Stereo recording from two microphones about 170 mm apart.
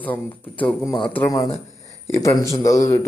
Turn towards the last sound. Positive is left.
turn(degrees=20)  # may be behind; listen again after turning